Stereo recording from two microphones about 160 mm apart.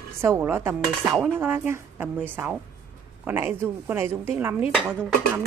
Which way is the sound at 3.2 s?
15° right (ahead or behind).